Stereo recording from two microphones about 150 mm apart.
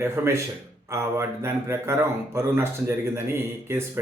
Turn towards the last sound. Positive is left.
turn(degrees=-15)  # may be behind; listen again after turning